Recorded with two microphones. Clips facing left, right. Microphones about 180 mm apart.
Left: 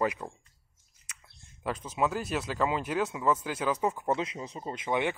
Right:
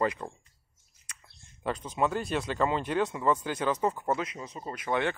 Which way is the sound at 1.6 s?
5° left (ahead or behind).